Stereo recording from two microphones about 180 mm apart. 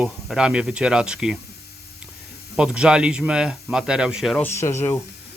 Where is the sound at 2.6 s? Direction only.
5° right (ahead or behind).